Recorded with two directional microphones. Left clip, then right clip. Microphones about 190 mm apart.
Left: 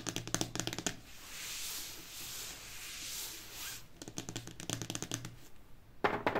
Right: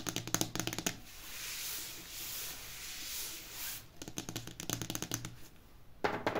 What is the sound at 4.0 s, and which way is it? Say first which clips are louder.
Computer keyboard: right 2 dB; 5° right (ahead or behind).